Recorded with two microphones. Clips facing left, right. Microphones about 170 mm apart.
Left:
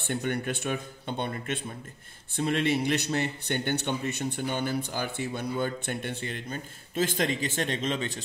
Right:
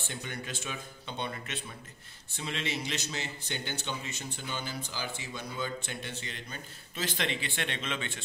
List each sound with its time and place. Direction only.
0.0 s a man's voice: 60° left (ahead or behind); by 8.2 s 40° left (ahead or behind)